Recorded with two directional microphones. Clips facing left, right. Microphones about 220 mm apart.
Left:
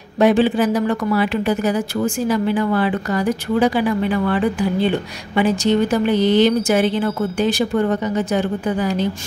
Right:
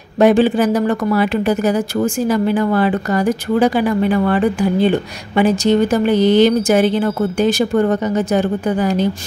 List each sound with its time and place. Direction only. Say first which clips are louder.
0.2 s speech: right 3 dB; 45° right (ahead or behind)